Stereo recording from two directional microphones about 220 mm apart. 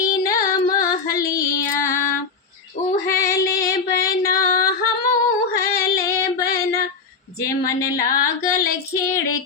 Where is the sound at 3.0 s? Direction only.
15° left (ahead or behind).